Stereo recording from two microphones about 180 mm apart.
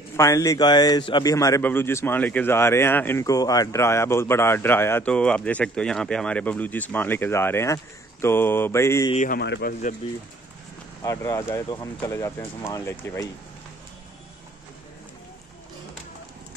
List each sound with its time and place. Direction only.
0.1 s a man's voice: 15° left (ahead or behind)
9.1 s speech: 45° left (ahead or behind)
9.4 s speech: 60° left (ahead or behind)
11.0 s a man's voice: 15° left (ahead or behind)